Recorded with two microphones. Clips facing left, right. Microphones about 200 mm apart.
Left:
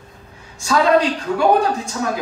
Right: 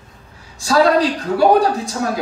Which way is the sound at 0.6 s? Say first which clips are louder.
Right 1 dB; 35° right (ahead or behind).